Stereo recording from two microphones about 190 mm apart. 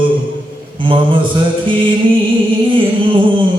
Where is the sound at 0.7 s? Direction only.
25° right (ahead or behind).